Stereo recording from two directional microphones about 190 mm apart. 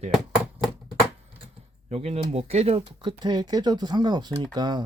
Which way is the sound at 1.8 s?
35° right (ahead or behind).